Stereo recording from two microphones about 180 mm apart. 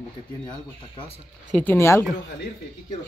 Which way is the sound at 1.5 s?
10° left (ahead or behind).